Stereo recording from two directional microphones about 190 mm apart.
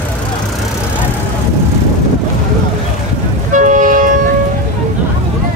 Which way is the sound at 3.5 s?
40° right (ahead or behind).